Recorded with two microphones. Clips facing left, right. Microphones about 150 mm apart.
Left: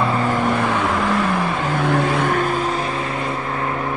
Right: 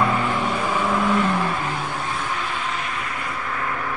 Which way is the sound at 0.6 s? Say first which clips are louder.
Left 3 dB; 70° left (ahead or behind).